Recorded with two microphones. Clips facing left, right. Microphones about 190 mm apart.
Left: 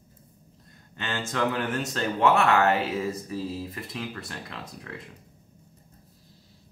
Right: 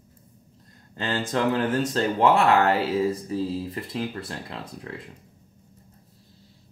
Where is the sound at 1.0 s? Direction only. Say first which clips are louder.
Right 3 dB; 35° right (ahead or behind).